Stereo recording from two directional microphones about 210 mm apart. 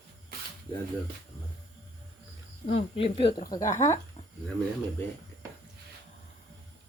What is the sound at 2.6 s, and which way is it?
Speech, 30° left (ahead or behind).